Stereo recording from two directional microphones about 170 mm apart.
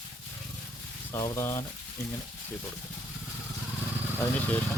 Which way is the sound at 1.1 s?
20° left (ahead or behind).